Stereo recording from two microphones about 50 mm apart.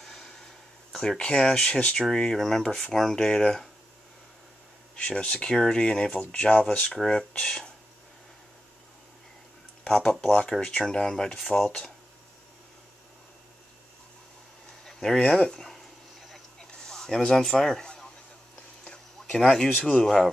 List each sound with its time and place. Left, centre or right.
0.0 s a sound: centre
1.1 s speech: centre
4.9 s speech: centre
7.1 s speech: centre
9.8 s speech: centre
10.5 s speech: centre
14.9 s speech: centre
15.6 s a sound: centre
19.3 s speech: centre